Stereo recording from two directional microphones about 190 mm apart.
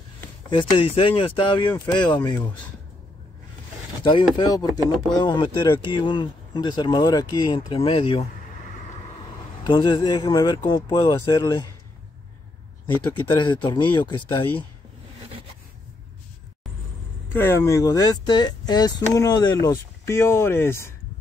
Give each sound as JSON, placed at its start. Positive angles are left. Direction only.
{"t": 0.5, "sound": "speech", "side_deg": 30}
{"t": 4.0, "sound": "speech", "side_deg": 25}
{"t": 9.6, "sound": "speech", "side_deg": 25}
{"t": 12.8, "sound": "speech", "side_deg": 25}
{"t": 17.3, "sound": "speech", "side_deg": 10}